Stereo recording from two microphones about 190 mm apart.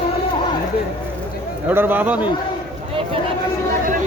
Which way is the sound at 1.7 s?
10° right (ahead or behind).